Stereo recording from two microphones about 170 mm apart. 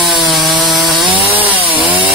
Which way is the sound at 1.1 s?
30° right (ahead or behind).